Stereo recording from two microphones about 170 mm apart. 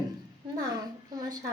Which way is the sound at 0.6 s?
25° right (ahead or behind).